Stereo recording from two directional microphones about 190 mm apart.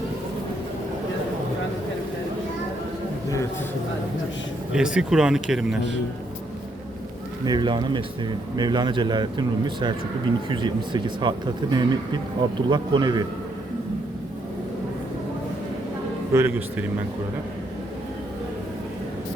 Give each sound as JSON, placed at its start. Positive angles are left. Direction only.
{"t": 4.7, "sound": "speech", "side_deg": -5}
{"t": 7.4, "sound": "speech", "side_deg": -25}
{"t": 16.3, "sound": "speech", "side_deg": -10}